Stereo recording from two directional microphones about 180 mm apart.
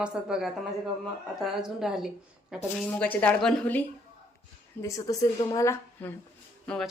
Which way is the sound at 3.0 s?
10° left (ahead or behind).